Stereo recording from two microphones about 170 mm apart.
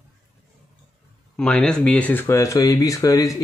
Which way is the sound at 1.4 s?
5° left (ahead or behind).